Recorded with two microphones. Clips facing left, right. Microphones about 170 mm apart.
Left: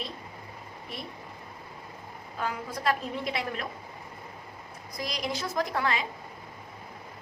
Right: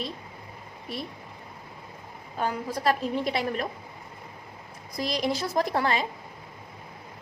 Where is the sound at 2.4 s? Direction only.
35° right (ahead or behind).